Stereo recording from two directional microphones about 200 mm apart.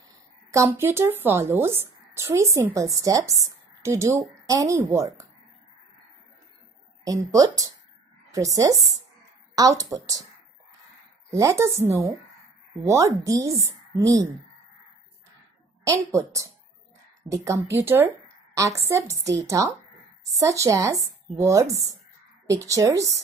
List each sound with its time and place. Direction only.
0.5 s speech: 15° right (ahead or behind)
7.1 s speech: 15° right (ahead or behind)
11.3 s speech: 15° right (ahead or behind)
15.8 s speech: 15° right (ahead or behind)